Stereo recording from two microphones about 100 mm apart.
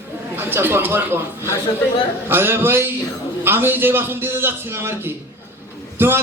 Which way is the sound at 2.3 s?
20° right (ahead or behind).